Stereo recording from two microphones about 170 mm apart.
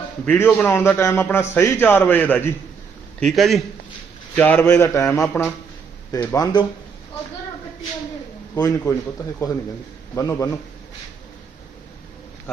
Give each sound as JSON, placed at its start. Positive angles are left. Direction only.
{"t": 0.3, "sound": "a man's voice", "side_deg": 10}
{"t": 8.5, "sound": "a man's voice", "side_deg": 15}
{"t": 10.2, "sound": "a man's voice", "side_deg": 15}